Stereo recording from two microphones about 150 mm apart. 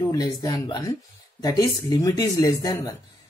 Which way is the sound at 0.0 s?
25° left (ahead or behind).